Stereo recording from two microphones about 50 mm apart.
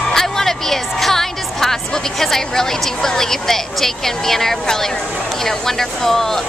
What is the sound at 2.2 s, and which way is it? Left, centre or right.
A woman's voice, centre.